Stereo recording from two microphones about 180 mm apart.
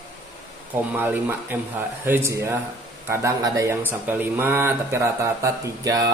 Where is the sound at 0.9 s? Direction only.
10° right (ahead or behind).